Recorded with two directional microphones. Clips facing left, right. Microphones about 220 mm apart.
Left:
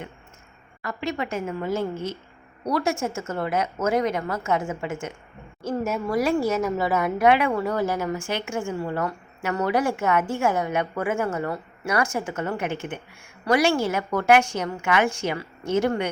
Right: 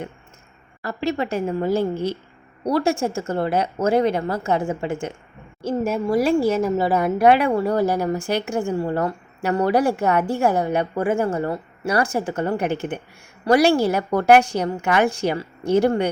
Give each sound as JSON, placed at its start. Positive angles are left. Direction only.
{"t": 0.8, "sound": "speech", "side_deg": -35}